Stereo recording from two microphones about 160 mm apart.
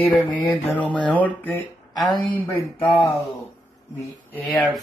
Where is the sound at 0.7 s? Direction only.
10° left (ahead or behind).